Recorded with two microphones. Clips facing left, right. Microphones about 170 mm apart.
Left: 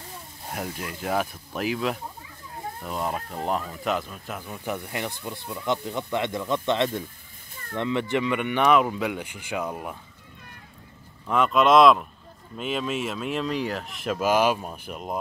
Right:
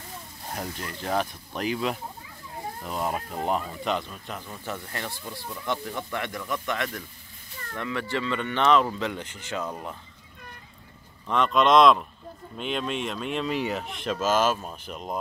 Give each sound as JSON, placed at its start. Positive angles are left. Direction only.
{"t": 0.5, "sound": "speech", "side_deg": 5}
{"t": 11.2, "sound": "speech", "side_deg": 5}